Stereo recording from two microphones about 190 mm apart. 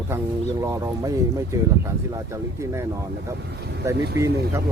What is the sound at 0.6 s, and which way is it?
Speech, 15° right (ahead or behind).